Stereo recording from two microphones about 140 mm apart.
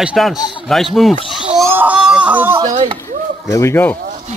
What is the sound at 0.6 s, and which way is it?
Speech, centre (ahead or behind).